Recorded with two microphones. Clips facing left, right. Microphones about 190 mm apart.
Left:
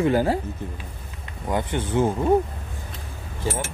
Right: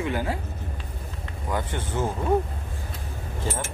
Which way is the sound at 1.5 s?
20° left (ahead or behind).